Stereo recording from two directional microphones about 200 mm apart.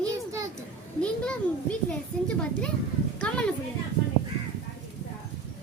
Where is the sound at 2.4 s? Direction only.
5° left (ahead or behind).